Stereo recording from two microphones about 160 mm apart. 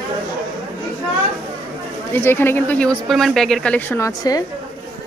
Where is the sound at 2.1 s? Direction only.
15° left (ahead or behind).